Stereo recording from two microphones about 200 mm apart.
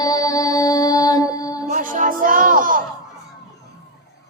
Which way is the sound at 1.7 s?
40° right (ahead or behind).